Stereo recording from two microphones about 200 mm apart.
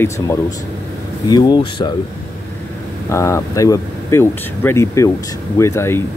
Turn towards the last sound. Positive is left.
turn(degrees=15)  # may be behind; listen again after turning